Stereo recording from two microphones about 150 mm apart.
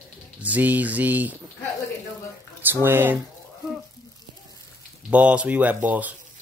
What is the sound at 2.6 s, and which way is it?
Speech, 15° right (ahead or behind).